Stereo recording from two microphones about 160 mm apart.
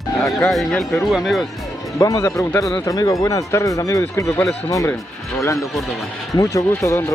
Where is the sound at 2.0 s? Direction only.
20° left (ahead or behind).